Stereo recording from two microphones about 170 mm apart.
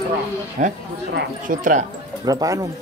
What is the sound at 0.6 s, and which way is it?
Speech, 55° right (ahead or behind).